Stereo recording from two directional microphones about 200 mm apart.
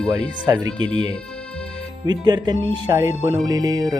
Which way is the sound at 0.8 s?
80° right.